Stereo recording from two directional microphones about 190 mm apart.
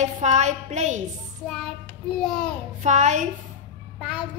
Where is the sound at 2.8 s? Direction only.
40° right (ahead or behind).